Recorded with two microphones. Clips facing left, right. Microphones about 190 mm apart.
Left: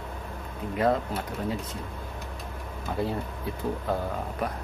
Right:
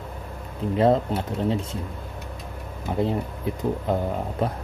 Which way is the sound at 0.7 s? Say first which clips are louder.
Right 5 dB; 25° right (ahead or behind).